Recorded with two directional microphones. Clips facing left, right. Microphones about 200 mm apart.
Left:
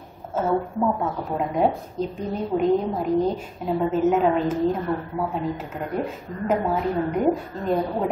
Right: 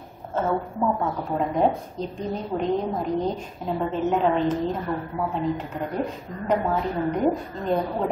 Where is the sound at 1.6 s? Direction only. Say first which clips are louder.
Left 2 dB; 5° left (ahead or behind).